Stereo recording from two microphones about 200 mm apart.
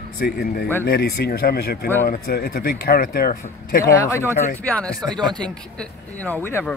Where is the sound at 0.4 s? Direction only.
50° left (ahead or behind).